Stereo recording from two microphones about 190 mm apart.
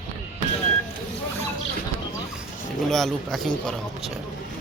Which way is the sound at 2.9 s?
Centre (ahead or behind).